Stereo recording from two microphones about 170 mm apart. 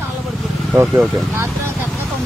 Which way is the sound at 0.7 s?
10° right (ahead or behind).